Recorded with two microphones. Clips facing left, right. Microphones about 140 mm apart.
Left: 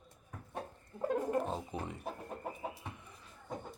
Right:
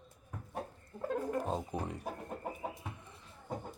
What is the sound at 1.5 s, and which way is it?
Music, 25° right (ahead or behind).